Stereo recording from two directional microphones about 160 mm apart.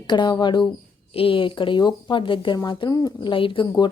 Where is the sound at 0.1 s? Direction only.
30° left (ahead or behind).